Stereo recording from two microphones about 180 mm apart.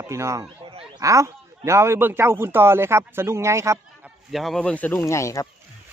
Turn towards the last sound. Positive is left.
turn(degrees=15)  # may be behind; listen again after turning